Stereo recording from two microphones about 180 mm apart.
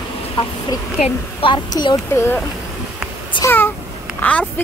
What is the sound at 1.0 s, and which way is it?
Speech, 30° left (ahead or behind).